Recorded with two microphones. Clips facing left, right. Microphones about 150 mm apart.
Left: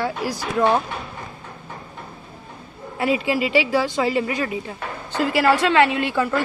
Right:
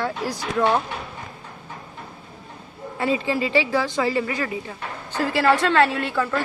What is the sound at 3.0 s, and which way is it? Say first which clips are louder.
Speech: left 2 dB; 15° left (ahead or behind).